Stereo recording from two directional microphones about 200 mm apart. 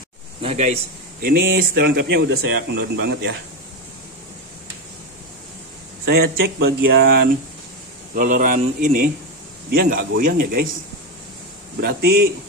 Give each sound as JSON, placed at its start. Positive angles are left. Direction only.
{"t": 0.4, "sound": "speech", "side_deg": -35}
{"t": 1.2, "sound": "speech", "side_deg": -50}
{"t": 6.0, "sound": "speech", "side_deg": -55}
{"t": 8.1, "sound": "a man's voice", "side_deg": -40}
{"t": 11.8, "sound": "speech", "side_deg": -50}